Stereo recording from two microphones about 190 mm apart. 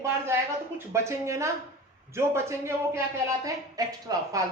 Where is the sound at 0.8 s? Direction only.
15° right (ahead or behind).